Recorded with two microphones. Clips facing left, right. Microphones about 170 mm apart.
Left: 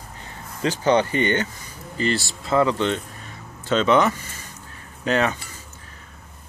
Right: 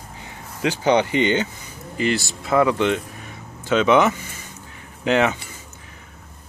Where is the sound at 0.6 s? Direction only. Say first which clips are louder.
Right 1 dB; 15° right (ahead or behind).